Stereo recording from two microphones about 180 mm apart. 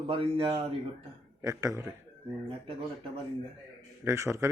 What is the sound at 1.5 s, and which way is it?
Speech, 15° right (ahead or behind).